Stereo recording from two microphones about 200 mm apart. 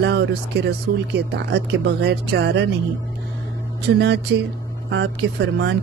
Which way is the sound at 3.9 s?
55° right (ahead or behind).